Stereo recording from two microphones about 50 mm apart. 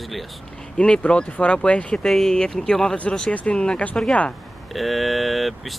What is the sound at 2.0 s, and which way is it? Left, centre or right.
Speech, centre.